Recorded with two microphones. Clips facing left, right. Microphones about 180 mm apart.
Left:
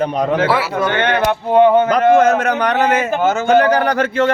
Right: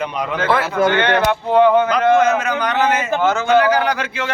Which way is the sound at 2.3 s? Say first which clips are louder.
Left 3 dB; 60° left (ahead or behind).